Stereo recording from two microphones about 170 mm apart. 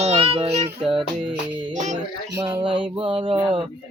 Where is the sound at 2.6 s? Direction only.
30° right (ahead or behind).